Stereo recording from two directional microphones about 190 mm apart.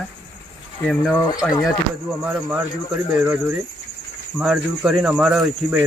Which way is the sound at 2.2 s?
5° right (ahead or behind).